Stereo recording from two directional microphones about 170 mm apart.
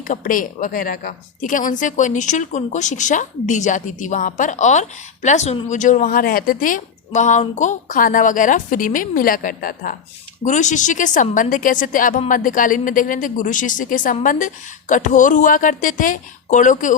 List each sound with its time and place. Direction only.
0.1 s a woman's voice: 55° left (ahead or behind)
10.4 s a woman's voice: 45° left (ahead or behind)